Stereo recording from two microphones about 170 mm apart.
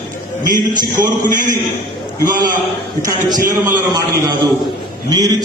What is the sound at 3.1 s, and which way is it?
Speech, 20° right (ahead or behind).